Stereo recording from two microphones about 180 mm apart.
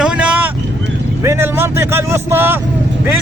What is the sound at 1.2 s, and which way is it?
Speech, 15° right (ahead or behind).